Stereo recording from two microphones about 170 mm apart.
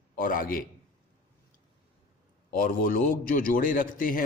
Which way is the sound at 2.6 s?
55° left (ahead or behind).